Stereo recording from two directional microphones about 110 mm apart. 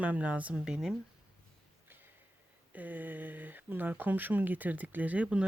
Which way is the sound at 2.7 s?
15° right (ahead or behind).